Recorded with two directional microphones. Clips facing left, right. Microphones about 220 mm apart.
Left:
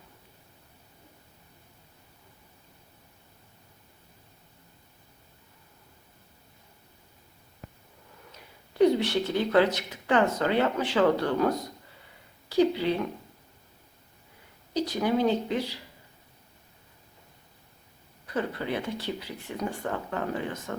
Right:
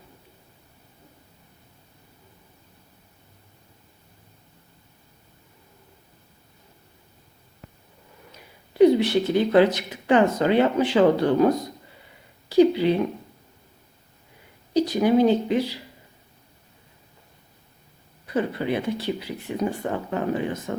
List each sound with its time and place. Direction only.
8.8 s a woman's voice: 10° right (ahead or behind)
14.7 s speech: 10° right (ahead or behind)
18.3 s speech: 15° right (ahead or behind)